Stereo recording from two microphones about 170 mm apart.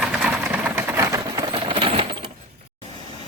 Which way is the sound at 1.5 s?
30° right (ahead or behind).